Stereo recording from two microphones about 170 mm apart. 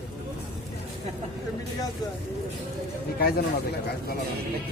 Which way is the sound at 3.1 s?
65° left (ahead or behind).